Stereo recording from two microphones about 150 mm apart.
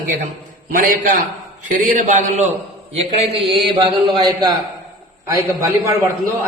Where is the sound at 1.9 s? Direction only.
55° right (ahead or behind).